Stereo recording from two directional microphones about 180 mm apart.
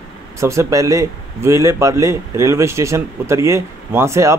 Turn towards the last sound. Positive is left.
turn(degrees=-15)  # may be behind; listen again after turning